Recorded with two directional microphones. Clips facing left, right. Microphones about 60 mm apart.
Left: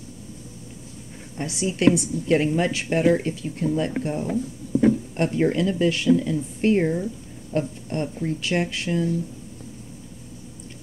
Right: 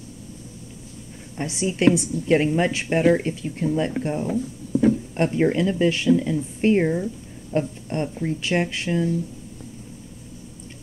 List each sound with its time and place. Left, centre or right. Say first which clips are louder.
1.4 s a woman's voice: right 1 dB; right